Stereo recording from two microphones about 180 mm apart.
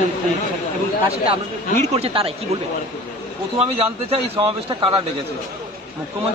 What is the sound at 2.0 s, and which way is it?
Speech, 35° right (ahead or behind).